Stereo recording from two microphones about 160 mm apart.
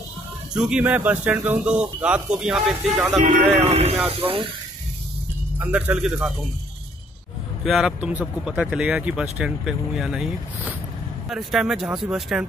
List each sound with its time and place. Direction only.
0.6 s speech: 5° right (ahead or behind)
3.6 s speech: 40° right (ahead or behind)
5.6 s speech: 10° right (ahead or behind)
7.6 s speech: centre (ahead or behind)